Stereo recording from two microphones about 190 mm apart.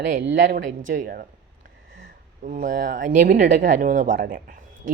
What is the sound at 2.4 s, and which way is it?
Speech, 40° right (ahead or behind).